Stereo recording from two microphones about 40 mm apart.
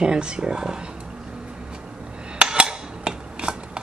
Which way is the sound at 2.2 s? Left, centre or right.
Right.